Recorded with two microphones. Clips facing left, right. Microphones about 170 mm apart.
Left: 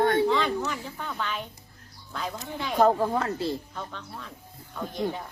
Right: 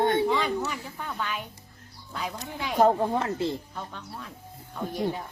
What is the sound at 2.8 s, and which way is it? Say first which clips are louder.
Child singing: even; 20° right (ahead or behind).